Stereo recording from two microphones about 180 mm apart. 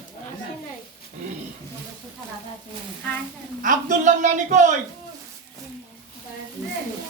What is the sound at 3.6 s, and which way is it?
A woman's voice, 45° right (ahead or behind).